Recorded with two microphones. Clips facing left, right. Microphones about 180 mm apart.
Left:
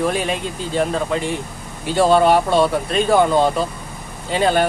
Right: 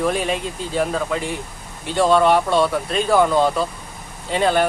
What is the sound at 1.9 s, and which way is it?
Speech, 30° left (ahead or behind).